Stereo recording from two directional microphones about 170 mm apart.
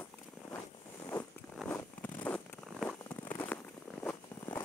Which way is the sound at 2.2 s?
5° left (ahead or behind).